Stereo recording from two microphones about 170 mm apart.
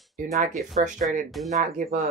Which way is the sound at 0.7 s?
50° right (ahead or behind).